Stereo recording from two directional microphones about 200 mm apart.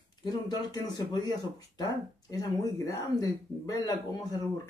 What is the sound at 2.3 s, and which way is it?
Speech, 15° left (ahead or behind).